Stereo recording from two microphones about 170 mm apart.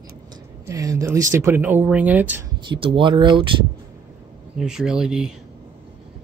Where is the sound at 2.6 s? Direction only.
30° right (ahead or behind).